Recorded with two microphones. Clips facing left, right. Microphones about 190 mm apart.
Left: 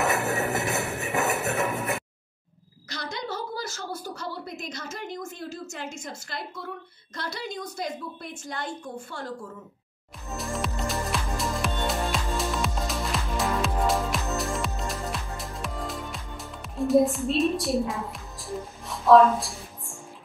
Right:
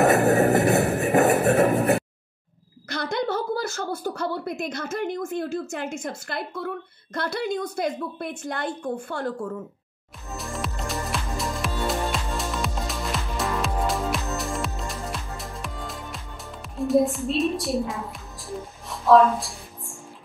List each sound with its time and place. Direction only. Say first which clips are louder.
0.0 s music: right 8 dB; 40° right (ahead or behind)
2.9 s a sound: right 8 dB; 55° right (ahead or behind)
7.2 s a woman's voice: right 8 dB; 55° right (ahead or behind)
10.3 s music: left 1 dB; centre (ahead or behind)